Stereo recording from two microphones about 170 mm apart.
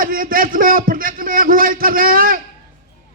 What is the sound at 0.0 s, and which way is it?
A man's voice, 55° right (ahead or behind).